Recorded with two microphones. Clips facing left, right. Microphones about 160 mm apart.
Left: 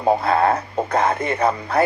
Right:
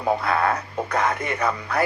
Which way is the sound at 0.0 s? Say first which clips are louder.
Left 5 dB; 30° left (ahead or behind).